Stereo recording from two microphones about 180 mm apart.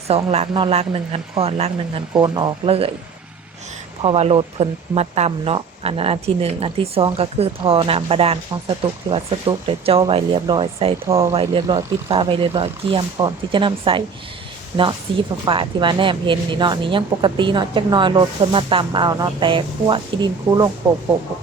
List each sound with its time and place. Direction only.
0.3 s speech: 30° right (ahead or behind)
2.1 s speech: 25° right (ahead or behind)
4.0 s speech: 30° right (ahead or behind)
11.1 s speech: 15° right (ahead or behind)
11.3 s speech: 25° right (ahead or behind)
15.1 s speech: 30° right (ahead or behind)